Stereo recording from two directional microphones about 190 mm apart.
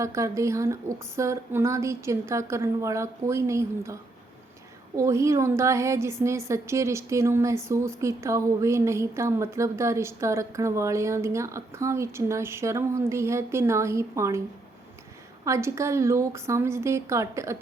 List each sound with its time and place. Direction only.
0.0 s a woman's voice: 15° right (ahead or behind)
4.9 s a woman's voice: 15° right (ahead or behind)
15.4 s a woman's voice: 15° right (ahead or behind)